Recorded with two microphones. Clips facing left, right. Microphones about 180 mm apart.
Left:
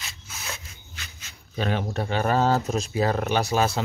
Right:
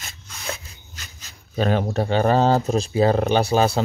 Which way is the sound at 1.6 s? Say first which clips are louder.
Right 6 dB; 40° right (ahead or behind).